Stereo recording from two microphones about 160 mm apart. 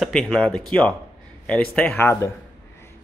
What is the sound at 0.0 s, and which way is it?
Speech, centre (ahead or behind).